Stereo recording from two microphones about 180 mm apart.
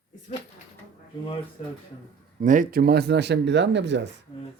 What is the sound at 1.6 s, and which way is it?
Speech, 35° left (ahead or behind).